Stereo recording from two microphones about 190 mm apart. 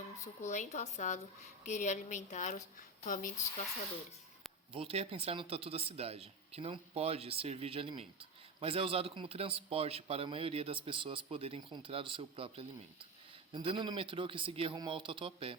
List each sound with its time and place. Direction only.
0.4 s a woman's voice: 40° left (ahead or behind)
4.7 s speech: 30° right (ahead or behind)